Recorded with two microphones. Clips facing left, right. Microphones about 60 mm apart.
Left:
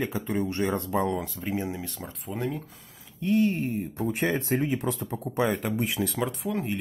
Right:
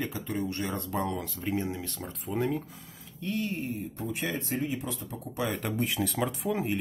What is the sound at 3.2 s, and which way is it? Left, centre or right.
Speech, left.